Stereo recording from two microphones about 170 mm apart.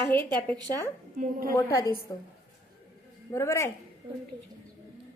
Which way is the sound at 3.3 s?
15° left (ahead or behind).